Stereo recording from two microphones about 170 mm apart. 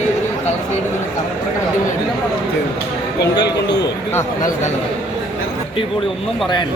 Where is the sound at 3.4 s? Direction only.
90° left.